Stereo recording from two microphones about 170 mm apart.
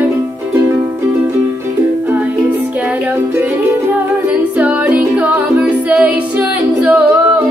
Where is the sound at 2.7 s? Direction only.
10° right (ahead or behind).